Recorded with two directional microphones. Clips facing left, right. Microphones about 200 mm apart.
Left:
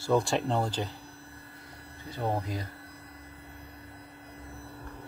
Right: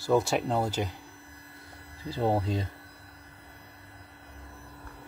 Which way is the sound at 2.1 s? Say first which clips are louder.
Right 5 dB; 30° right (ahead or behind).